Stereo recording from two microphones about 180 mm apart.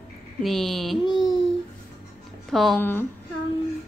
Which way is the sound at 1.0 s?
25° left (ahead or behind).